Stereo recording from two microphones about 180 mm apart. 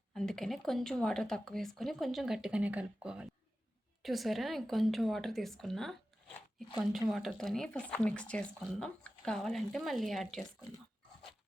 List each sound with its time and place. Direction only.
0.1 s speech: centre (ahead or behind)